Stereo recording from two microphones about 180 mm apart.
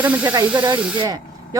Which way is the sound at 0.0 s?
10° right (ahead or behind).